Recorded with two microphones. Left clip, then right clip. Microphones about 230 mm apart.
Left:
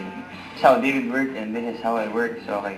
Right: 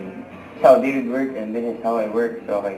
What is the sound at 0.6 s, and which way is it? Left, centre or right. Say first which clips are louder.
Speech: right 4 dB; left.